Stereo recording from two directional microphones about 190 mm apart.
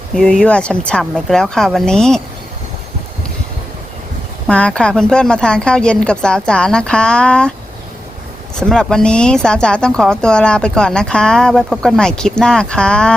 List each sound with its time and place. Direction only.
0.1 s speech: 5° left (ahead or behind)
4.4 s speech: 5° left (ahead or behind)
8.6 s speech: 5° left (ahead or behind)